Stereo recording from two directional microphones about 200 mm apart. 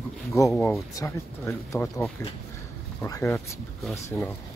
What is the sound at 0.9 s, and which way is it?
Speech, 15° left (ahead or behind).